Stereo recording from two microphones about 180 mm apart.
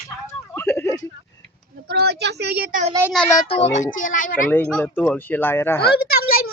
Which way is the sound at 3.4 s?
35° left (ahead or behind).